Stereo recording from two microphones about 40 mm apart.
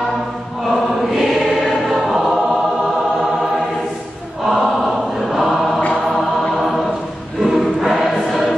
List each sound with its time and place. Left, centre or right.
0.7 s choir: centre
4.5 s choir: centre
7.4 s choir: centre